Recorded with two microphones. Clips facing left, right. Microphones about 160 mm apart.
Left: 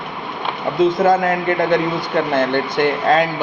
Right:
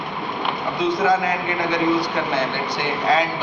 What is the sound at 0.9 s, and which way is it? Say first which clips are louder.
Speech: left 4 dB; 50° left (ahead or behind).